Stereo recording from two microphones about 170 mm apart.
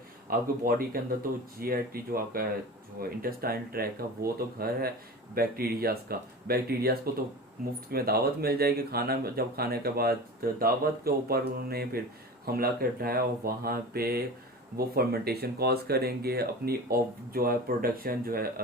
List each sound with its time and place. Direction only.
0.3 s speech: 60° right (ahead or behind)